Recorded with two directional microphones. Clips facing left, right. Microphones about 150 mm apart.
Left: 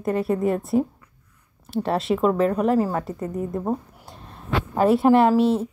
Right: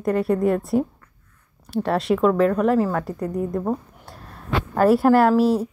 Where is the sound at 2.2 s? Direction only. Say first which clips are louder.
Right 3 dB; 35° left (ahead or behind).